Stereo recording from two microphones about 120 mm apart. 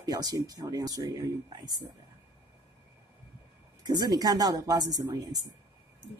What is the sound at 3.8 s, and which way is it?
Speech, 35° right (ahead or behind).